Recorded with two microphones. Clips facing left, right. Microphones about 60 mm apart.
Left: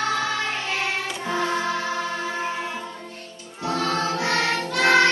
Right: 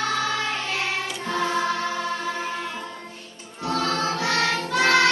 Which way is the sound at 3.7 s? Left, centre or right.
Centre.